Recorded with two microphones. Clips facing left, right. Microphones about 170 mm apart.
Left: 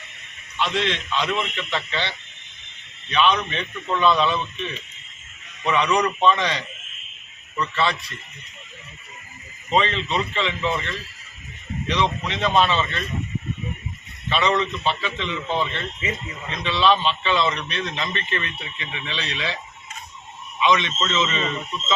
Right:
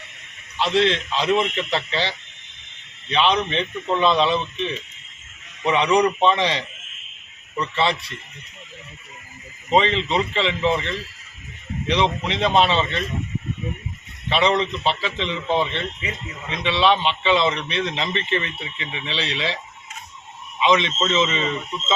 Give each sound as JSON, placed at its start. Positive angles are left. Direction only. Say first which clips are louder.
{"t": 0.5, "sound": "a man's voice", "louder": "right 5 dB", "side_deg": -30}
{"t": 9.6, "sound": "a man's voice", "louder": "right 3 dB", "side_deg": -20}
{"t": 14.3, "sound": "a man's voice", "louder": "right 2 dB", "side_deg": -25}
{"t": 20.6, "sound": "a man's voice", "louder": "right 2 dB", "side_deg": -20}